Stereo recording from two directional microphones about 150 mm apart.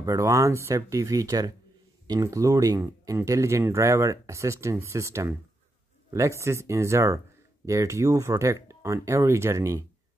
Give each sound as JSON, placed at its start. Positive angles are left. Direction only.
{"t": 0.0, "sound": "speech", "side_deg": -20}